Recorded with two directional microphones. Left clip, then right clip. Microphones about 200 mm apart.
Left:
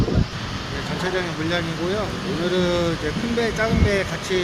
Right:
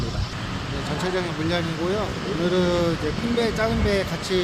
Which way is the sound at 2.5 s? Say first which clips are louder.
Left 1 dB; 5° right (ahead or behind).